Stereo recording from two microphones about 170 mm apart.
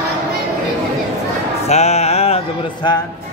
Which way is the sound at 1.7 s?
40° left (ahead or behind).